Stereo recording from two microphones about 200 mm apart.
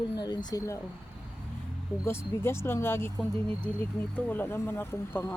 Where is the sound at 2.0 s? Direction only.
10° left (ahead or behind).